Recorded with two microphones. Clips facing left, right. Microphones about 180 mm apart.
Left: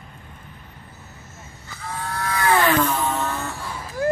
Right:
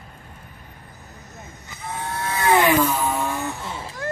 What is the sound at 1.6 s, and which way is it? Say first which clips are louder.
Vehicle: even; 20° right (ahead or behind).